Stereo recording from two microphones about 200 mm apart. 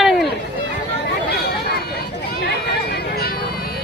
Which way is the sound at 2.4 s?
50° left (ahead or behind).